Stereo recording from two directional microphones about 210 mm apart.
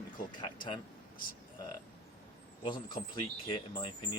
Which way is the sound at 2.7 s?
20° left (ahead or behind).